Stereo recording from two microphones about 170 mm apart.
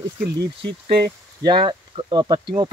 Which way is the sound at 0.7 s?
70° right (ahead or behind).